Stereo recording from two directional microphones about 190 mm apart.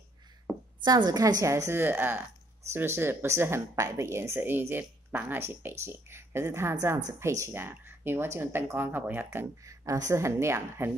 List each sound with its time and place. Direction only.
0.8 s speech: 20° right (ahead or behind)